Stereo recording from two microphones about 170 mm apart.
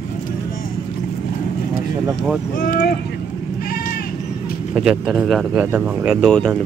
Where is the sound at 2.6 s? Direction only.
55° left (ahead or behind).